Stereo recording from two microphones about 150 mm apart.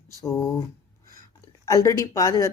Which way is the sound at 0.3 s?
20° left (ahead or behind).